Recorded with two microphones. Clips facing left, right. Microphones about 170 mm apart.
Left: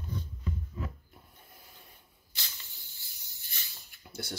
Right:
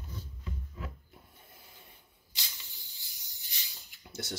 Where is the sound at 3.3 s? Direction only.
15° right (ahead or behind).